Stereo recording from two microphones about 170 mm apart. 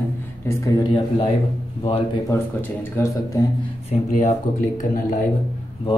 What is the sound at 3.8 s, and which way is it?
Speech, 45° left (ahead or behind).